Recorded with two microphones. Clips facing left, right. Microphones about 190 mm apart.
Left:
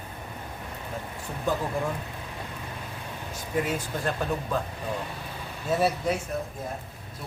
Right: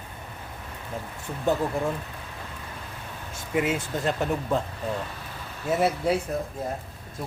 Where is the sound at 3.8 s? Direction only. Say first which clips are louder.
Right 3 dB; 20° right (ahead or behind).